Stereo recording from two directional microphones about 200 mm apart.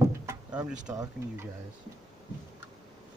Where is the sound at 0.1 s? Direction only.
15° right (ahead or behind).